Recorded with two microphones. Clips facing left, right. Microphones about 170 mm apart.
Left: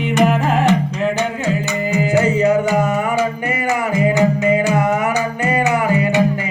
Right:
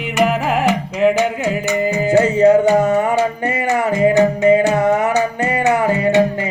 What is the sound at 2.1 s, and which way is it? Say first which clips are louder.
Music: right 4 dB; 30° right (ahead or behind).